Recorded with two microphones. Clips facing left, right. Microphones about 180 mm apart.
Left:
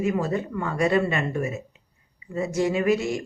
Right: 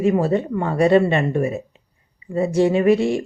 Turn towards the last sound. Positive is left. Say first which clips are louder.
# right 6 dB
turn(degrees=-30)  # may be behind; listen again after turning